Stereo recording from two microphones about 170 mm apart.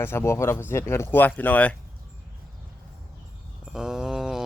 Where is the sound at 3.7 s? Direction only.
5° right (ahead or behind).